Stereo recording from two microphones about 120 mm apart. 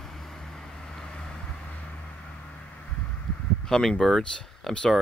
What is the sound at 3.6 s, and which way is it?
Speech, 5° left (ahead or behind).